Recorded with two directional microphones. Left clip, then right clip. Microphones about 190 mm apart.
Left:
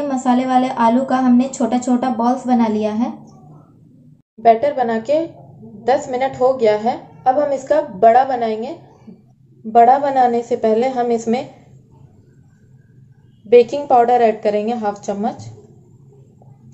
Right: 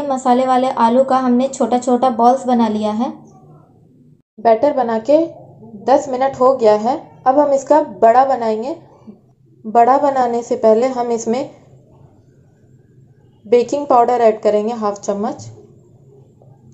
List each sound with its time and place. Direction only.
0.1 s a woman's voice: 15° right (ahead or behind)
4.4 s a woman's voice: 20° right (ahead or behind)
13.7 s a woman's voice: 20° right (ahead or behind)